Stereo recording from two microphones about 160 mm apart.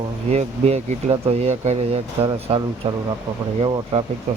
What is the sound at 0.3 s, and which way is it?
Speech, 40° right (ahead or behind).